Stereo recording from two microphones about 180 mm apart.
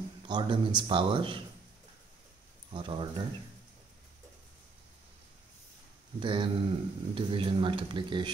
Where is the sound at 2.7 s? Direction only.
25° right (ahead or behind).